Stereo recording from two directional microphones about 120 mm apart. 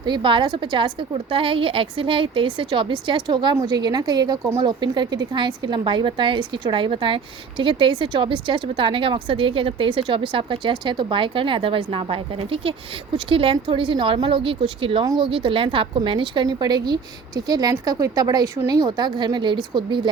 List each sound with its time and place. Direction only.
0.0 s a woman's voice: 40° right (ahead or behind)
15.0 s a woman's voice: 35° right (ahead or behind)
15.3 s a woman's voice: 45° right (ahead or behind)